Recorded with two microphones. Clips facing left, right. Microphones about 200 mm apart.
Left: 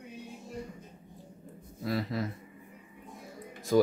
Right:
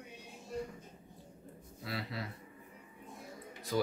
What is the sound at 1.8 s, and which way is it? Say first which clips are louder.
Speech: left 9 dB; 45° left (ahead or behind).